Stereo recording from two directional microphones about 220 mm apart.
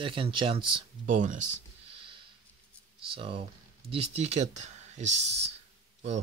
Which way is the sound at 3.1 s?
25° right (ahead or behind).